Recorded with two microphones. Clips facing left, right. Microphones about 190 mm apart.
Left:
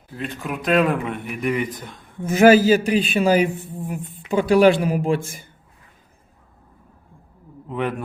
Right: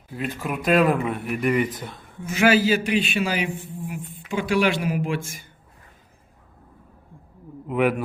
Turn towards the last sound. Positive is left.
turn(degrees=-10)  # may be behind; listen again after turning